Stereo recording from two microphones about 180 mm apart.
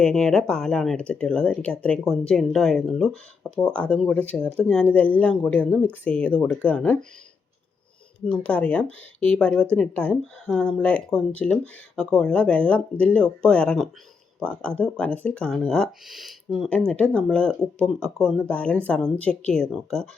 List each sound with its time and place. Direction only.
0.0 s speech: 5° left (ahead or behind)
8.3 s speech: 5° left (ahead or behind)